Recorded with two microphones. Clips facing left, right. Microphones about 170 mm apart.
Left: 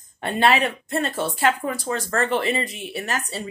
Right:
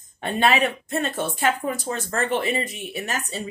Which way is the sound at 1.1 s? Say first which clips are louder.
Left 1 dB; 50° right (ahead or behind).